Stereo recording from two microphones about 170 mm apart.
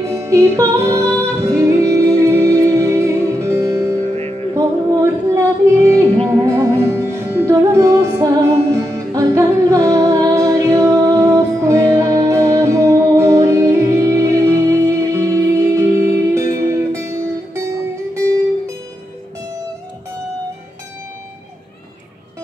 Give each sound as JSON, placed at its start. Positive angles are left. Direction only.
{"t": 0.0, "sound": "music", "side_deg": -15}
{"t": 4.1, "sound": "music", "side_deg": -40}
{"t": 4.6, "sound": "music", "side_deg": -20}